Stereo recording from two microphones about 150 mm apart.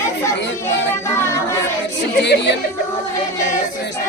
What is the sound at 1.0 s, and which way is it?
Music, 20° left (ahead or behind).